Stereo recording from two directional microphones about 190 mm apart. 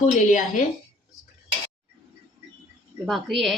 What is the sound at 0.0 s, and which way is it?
Speech, 40° left (ahead or behind).